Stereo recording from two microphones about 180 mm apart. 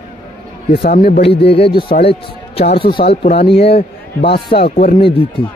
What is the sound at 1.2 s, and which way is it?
Speech, 35° left (ahead or behind).